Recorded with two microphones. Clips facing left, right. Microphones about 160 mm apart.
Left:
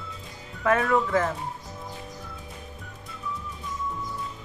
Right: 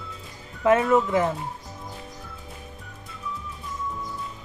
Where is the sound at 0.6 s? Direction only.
20° right (ahead or behind).